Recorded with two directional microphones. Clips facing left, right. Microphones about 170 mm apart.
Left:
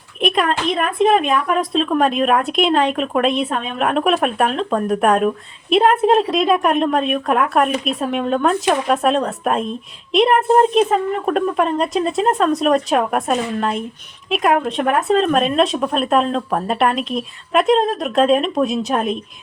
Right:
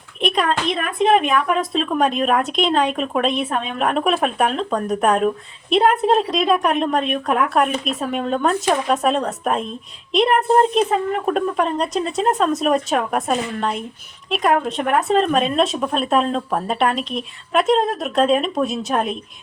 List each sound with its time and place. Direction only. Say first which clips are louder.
0.2 s a woman's voice: left 2 dB; centre (ahead or behind)
1.5 s a woman's voice: left 3 dB; centre (ahead or behind)